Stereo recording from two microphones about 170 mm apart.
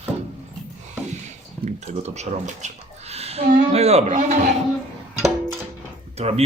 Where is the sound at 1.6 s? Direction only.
40° right (ahead or behind).